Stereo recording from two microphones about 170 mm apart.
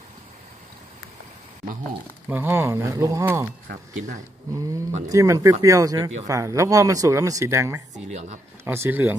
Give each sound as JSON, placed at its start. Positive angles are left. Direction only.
{"t": 2.2, "sound": "speech", "side_deg": -10}
{"t": 3.6, "sound": "speech", "side_deg": -45}
{"t": 5.0, "sound": "speech", "side_deg": -20}
{"t": 7.9, "sound": "speech", "side_deg": -40}
{"t": 8.6, "sound": "speech", "side_deg": -15}